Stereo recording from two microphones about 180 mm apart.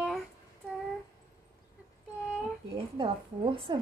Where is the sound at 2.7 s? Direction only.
30° right (ahead or behind).